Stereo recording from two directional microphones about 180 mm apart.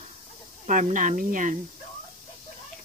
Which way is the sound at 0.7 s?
45° right (ahead or behind).